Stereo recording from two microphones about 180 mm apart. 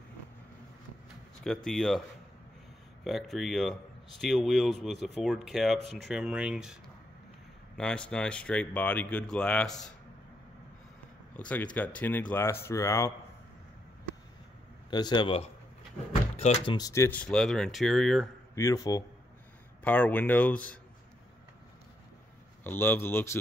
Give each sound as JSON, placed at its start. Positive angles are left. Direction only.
{"t": 1.4, "sound": "speech", "side_deg": 5}
{"t": 11.3, "sound": "speech", "side_deg": 5}
{"t": 14.9, "sound": "speech", "side_deg": 25}
{"t": 16.7, "sound": "speech", "side_deg": 20}
{"t": 18.5, "sound": "speech", "side_deg": 15}
{"t": 19.8, "sound": "speech", "side_deg": 10}
{"t": 22.6, "sound": "speech", "side_deg": 10}